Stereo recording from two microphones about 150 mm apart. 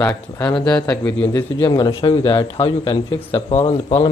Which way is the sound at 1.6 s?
30° left (ahead or behind).